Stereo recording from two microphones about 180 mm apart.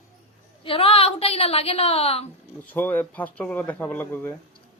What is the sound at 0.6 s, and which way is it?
A woman's voice, 30° left (ahead or behind).